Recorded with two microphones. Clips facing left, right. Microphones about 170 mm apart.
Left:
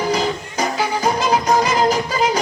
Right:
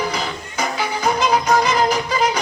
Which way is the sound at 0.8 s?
40° left (ahead or behind).